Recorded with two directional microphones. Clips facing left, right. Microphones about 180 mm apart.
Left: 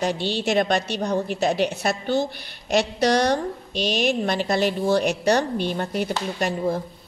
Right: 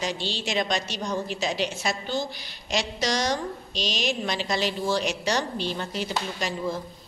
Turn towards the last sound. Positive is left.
turn(degrees=60)  # may be behind; listen again after turning